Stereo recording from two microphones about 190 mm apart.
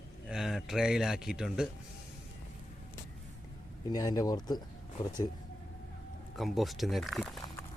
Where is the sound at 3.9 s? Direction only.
20° left (ahead or behind).